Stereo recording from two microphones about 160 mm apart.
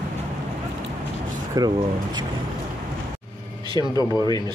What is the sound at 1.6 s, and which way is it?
Speech, 25° right (ahead or behind).